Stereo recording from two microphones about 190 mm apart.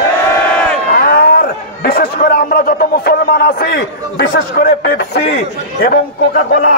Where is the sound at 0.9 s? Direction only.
50° left (ahead or behind).